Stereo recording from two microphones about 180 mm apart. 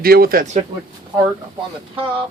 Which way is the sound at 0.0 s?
55° right (ahead or behind).